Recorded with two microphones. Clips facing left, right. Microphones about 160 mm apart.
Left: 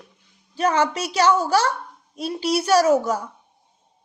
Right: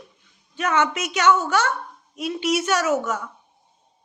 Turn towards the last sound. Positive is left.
turn(degrees=35)  # may be behind; listen again after turning